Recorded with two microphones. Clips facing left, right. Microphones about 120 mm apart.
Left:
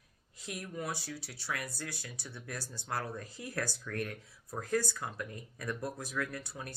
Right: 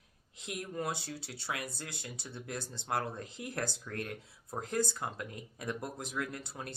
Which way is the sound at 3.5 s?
20° right (ahead or behind).